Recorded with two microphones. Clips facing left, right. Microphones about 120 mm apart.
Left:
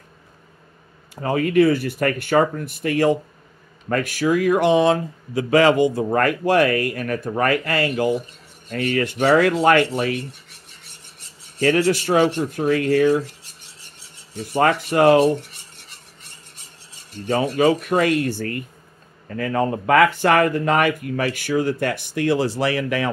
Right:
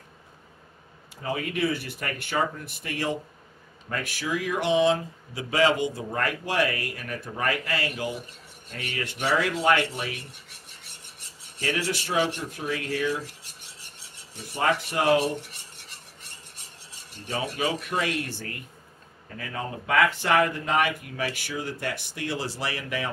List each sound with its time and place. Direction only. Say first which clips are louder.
1.1 s speech: left 12 dB; 50° left (ahead or behind)
9.2 s speech: left 8 dB; 60° left (ahead or behind)
11.6 s rub: left 12 dB; 65° left (ahead or behind)
11.9 s speech: left 9 dB; 45° left (ahead or behind)
12.5 s speech: left 15 dB; 60° left (ahead or behind)
14.5 s rub: left 7 dB; 70° left (ahead or behind)
17.3 s speech: left 11 dB; 55° left (ahead or behind)
19.2 s speech: left 12 dB; 60° left (ahead or behind)